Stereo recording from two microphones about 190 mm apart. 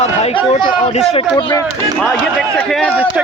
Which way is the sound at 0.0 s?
35° left (ahead or behind).